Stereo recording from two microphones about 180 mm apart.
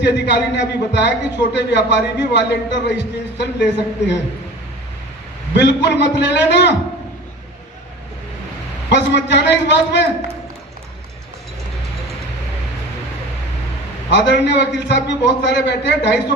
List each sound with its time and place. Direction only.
0.0 s a man's voice: 75° left (ahead or behind)
5.5 s a man's voice: 75° left (ahead or behind)
8.9 s a man's voice: 75° left (ahead or behind)
14.1 s a man's voice: 75° left (ahead or behind)